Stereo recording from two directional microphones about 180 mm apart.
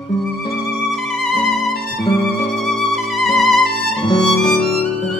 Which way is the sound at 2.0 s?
20° left (ahead or behind).